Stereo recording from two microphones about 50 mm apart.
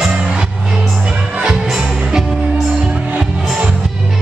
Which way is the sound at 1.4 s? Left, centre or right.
Centre.